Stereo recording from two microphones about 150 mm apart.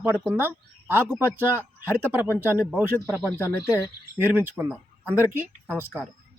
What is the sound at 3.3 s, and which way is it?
Speech, 15° left (ahead or behind).